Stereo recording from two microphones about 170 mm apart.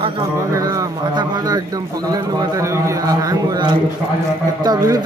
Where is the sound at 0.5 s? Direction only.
20° right (ahead or behind).